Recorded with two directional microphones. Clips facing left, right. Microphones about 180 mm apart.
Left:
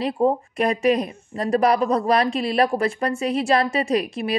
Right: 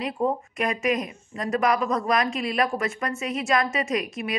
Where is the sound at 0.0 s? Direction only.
35° left (ahead or behind).